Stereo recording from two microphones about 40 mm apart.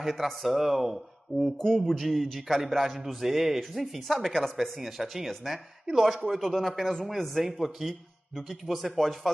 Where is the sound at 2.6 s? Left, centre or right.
Centre.